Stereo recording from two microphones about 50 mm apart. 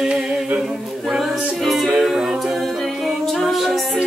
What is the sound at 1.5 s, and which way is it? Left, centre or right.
Music, centre.